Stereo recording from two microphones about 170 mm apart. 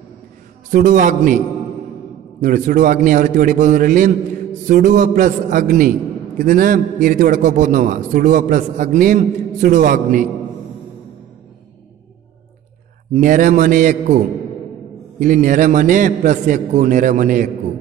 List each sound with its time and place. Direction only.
0.7 s a man's voice: 50° right (ahead or behind)
2.4 s a man's voice: 50° right (ahead or behind)
13.1 s a man's voice: 50° right (ahead or behind)